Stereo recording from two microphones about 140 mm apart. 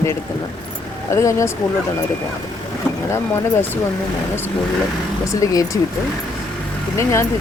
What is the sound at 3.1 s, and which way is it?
Speech, 15° left (ahead or behind).